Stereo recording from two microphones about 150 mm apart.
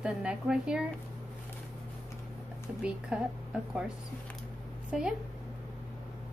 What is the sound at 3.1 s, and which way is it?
Speech, 5° right (ahead or behind).